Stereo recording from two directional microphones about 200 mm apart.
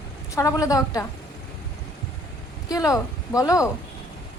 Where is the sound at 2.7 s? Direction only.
15° left (ahead or behind).